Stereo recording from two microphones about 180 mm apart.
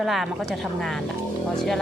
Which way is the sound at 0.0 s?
Centre (ahead or behind).